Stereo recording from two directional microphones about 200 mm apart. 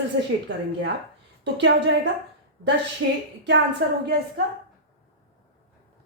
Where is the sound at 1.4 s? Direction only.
60° right (ahead or behind).